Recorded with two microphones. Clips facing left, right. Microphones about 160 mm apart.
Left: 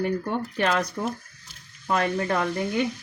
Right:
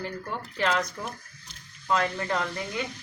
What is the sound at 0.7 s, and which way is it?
Speech, 50° left (ahead or behind).